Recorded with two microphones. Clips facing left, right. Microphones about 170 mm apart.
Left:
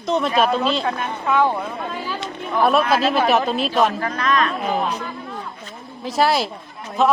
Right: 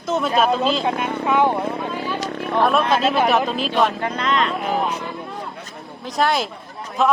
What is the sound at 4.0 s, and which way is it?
Speech, 25° right (ahead or behind).